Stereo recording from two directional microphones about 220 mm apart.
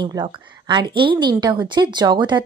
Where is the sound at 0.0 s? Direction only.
20° right (ahead or behind).